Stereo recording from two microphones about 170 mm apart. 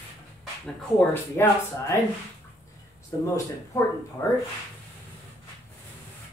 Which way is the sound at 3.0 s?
20° left (ahead or behind).